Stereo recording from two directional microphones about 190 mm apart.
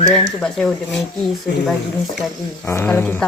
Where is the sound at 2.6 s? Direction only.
10° left (ahead or behind).